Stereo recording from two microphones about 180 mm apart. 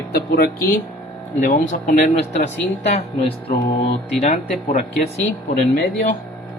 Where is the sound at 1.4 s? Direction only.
45° left (ahead or behind).